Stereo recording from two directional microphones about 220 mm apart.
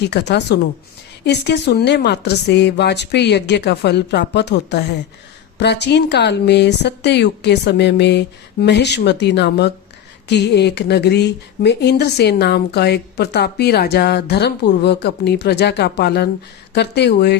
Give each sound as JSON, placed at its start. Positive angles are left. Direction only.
{"t": 0.1, "sound": "speech", "side_deg": 50}